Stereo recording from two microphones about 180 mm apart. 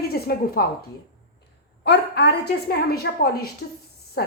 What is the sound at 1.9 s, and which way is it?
A woman's voice, 70° left (ahead or behind).